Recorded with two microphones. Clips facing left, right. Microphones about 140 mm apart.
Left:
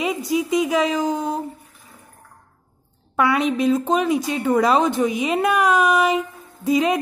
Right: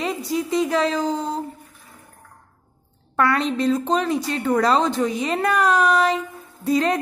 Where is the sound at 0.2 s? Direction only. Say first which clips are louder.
Left 3 dB; 15° left (ahead or behind).